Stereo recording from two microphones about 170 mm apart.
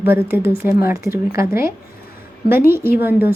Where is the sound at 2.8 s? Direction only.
15° right (ahead or behind).